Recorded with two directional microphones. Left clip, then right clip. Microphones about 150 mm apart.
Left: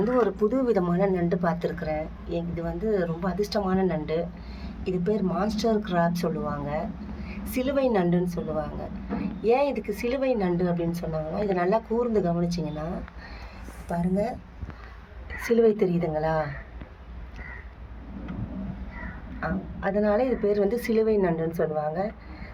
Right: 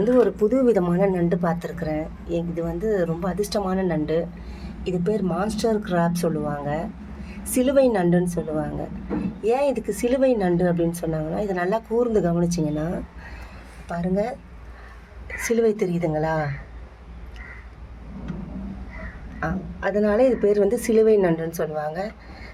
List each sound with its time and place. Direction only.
0.3 s a woman's voice: 30° right (ahead or behind); by 12.8 s 45° right (ahead or behind)
13.8 s a woman's voice: 45° right (ahead or behind)
15.4 s a woman's voice: 60° right (ahead or behind)
19.4 s a woman's voice: 55° right (ahead or behind)